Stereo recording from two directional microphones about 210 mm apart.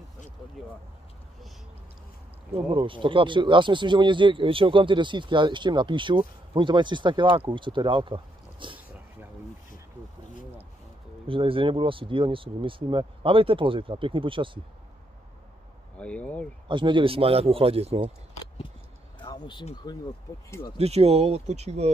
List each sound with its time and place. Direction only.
2.5 s speech: 25° right (ahead or behind)
11.2 s speech: 25° right (ahead or behind)
16.0 s speech: 5° left (ahead or behind)
16.6 s speech: 25° right (ahead or behind)
19.1 s speech: 20° left (ahead or behind)
20.7 s speech: 30° right (ahead or behind)